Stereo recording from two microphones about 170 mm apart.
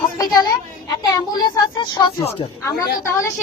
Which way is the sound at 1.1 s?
25° left (ahead or behind).